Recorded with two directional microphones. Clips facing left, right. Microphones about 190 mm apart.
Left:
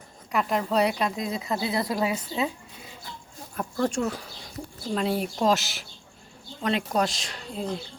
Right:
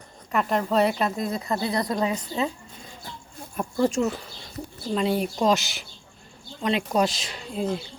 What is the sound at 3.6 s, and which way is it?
Speech, 10° right (ahead or behind).